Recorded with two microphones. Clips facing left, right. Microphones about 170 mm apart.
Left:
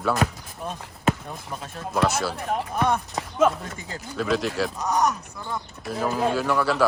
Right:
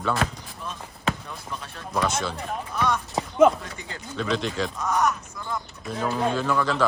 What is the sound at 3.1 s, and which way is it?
Speech, 15° right (ahead or behind).